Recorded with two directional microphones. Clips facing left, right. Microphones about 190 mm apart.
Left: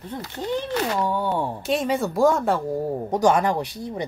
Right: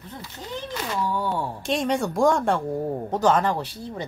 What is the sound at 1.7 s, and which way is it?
Speech, 5° left (ahead or behind).